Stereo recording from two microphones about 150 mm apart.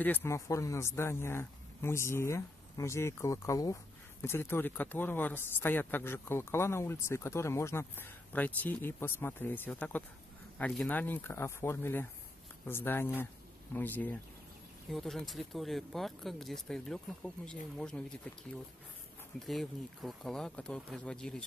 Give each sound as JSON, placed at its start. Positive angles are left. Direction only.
{"t": 0.0, "sound": "speech", "side_deg": 15}
{"t": 14.9, "sound": "speech", "side_deg": 0}
{"t": 19.4, "sound": "speech", "side_deg": 0}